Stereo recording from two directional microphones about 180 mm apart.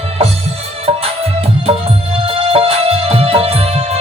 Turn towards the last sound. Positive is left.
turn(degrees=-30)  # may be behind; listen again after turning